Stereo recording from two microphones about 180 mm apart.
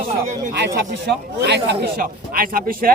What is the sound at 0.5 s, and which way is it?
A man's voice, 70° right (ahead or behind).